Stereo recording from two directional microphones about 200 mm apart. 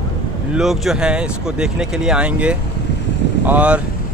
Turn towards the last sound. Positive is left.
turn(degrees=-5)  # may be behind; listen again after turning